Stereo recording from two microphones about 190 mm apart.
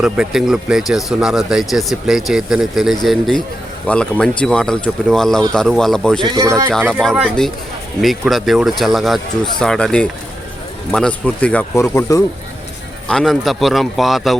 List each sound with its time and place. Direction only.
0.0 s speech: 5° right (ahead or behind)
6.2 s speech: 20° right (ahead or behind)
6.7 s speech: 5° left (ahead or behind)
13.1 s speech: centre (ahead or behind)